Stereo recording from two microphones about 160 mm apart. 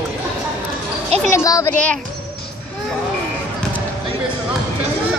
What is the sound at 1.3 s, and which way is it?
Speech, 20° left (ahead or behind).